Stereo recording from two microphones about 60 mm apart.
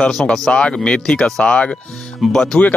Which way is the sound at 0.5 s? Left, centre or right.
Centre.